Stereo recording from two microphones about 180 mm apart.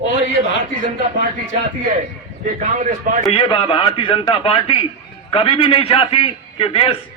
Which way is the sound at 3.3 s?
30° left (ahead or behind).